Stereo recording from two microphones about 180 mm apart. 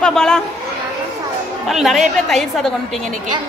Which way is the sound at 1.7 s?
Centre (ahead or behind).